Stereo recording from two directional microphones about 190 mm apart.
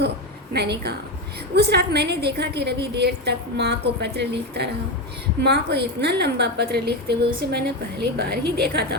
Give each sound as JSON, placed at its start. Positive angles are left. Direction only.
{"t": 0.5, "sound": "a woman's voice", "side_deg": -60}